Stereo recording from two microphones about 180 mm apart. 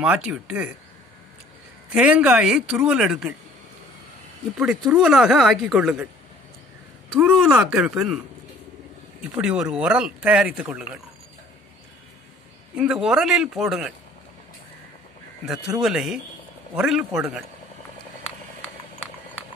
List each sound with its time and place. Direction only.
0.0 s speech: 5° right (ahead or behind)
1.9 s speech: 5° right (ahead or behind)
4.6 s speech: 5° right (ahead or behind)
7.2 s speech: 5° right (ahead or behind)
9.3 s speech: 5° right (ahead or behind)
12.7 s speech: 5° right (ahead or behind)
15.4 s speech: centre (ahead or behind)